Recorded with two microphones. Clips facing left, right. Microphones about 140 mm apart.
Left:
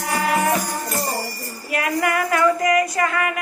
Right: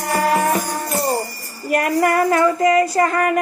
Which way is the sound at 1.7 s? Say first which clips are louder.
Right 5 dB; 45° right (ahead or behind).